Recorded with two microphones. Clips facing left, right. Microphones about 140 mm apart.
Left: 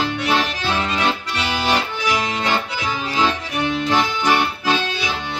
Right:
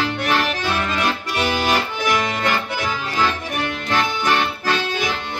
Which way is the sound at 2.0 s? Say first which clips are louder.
Right 1 dB; 50° right (ahead or behind).